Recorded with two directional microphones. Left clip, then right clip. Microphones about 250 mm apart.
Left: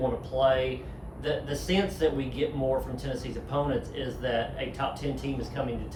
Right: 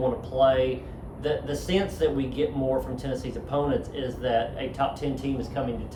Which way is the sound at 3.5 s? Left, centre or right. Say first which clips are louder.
Right 3 dB; centre.